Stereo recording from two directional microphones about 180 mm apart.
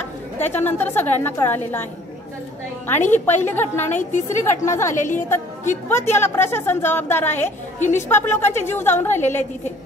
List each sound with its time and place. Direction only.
0.4 s a woman's voice: 10° left (ahead or behind)
2.9 s a woman's voice: 10° left (ahead or behind)
3.9 s a woman's voice: 45° left (ahead or behind)
4.3 s a woman's voice: 15° left (ahead or behind)